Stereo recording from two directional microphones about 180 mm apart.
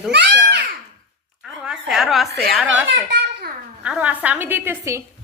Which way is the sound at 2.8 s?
65° right (ahead or behind).